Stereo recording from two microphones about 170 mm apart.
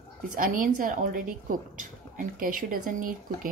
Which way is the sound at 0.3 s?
50° right (ahead or behind).